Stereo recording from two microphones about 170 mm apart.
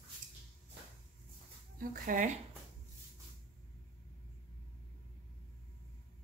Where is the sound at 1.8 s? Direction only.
50° right (ahead or behind).